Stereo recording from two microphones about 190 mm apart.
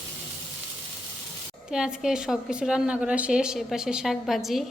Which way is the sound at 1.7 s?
5° right (ahead or behind).